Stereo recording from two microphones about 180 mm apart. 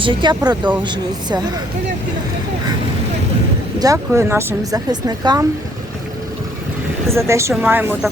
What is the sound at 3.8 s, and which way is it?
Speech, 15° right (ahead or behind).